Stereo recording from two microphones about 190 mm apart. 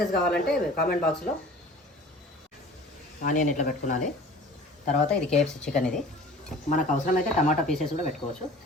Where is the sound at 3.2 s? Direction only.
45° left (ahead or behind).